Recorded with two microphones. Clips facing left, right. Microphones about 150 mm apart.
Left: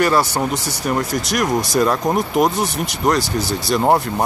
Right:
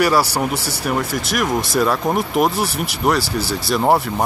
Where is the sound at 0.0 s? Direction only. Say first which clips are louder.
Even; 10° right (ahead or behind).